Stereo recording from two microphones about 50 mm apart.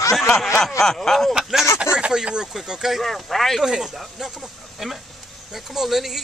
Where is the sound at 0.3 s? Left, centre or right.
Centre.